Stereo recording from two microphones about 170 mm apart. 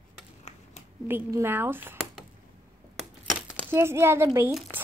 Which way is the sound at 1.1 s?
15° right (ahead or behind).